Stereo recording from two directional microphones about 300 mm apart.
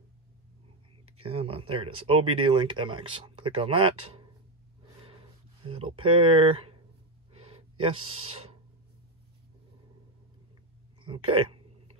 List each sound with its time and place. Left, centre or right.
1.2 s speech: centre
5.7 s speech: centre
7.3 s gasp: centre
11.1 s speech: centre